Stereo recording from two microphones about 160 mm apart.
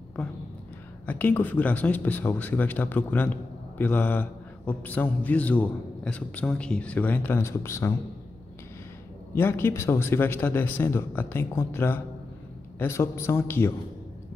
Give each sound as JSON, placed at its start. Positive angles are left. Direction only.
{"t": 1.0, "sound": "a man's voice", "side_deg": 10}
{"t": 9.3, "sound": "a man's voice", "side_deg": 15}